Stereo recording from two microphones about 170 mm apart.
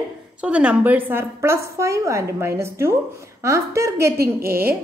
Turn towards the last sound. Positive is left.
turn(degrees=-65)  # may be behind; listen again after turning